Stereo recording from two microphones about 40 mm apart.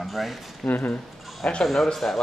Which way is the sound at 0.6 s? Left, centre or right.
Left.